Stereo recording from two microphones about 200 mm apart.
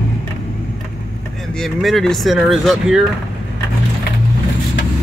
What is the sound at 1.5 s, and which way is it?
Speech, centre (ahead or behind).